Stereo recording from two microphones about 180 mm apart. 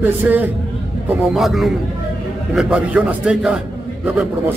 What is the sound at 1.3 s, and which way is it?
A man's voice, centre (ahead or behind).